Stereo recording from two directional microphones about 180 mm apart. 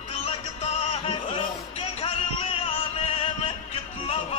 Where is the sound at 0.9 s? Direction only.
30° left (ahead or behind).